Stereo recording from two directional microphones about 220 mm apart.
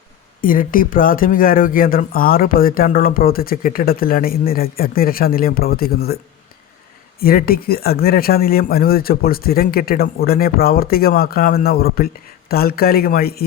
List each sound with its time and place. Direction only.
0.4 s speech: 40° left (ahead or behind)
7.2 s speech: 45° left (ahead or behind)